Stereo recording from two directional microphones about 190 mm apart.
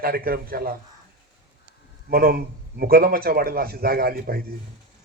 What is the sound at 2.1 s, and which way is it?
A man's voice, 50° right (ahead or behind).